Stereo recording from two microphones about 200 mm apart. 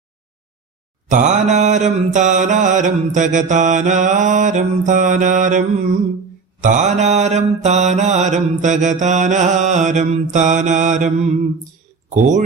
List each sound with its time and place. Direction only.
1.1 s mantra: 35° right (ahead or behind)
12.0 s speech: 40° right (ahead or behind)